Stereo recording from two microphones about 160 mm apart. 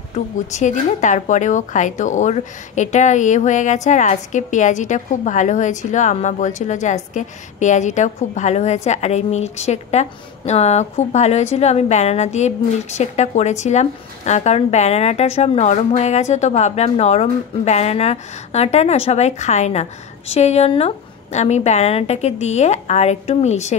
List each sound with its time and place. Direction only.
0.1 s a woman's voice: 50° left (ahead or behind)